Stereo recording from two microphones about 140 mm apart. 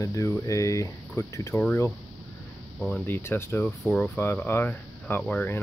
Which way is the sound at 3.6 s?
5° left (ahead or behind).